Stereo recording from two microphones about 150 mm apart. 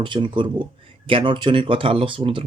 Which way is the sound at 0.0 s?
30° right (ahead or behind).